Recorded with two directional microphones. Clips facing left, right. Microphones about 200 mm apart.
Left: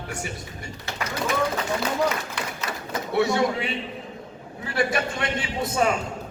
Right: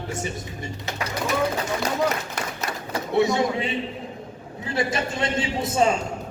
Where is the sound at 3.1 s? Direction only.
20° right (ahead or behind).